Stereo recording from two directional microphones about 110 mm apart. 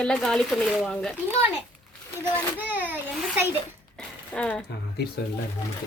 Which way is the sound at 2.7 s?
15° right (ahead or behind).